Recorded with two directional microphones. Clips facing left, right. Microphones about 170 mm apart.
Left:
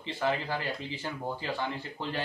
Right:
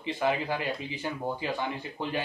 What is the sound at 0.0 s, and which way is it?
Speech, 15° right (ahead or behind).